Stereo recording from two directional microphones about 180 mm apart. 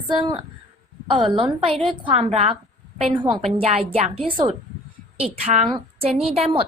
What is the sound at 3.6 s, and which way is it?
A woman's voice, 35° right (ahead or behind).